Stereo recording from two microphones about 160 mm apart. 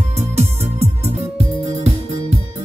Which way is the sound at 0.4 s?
40° right (ahead or behind).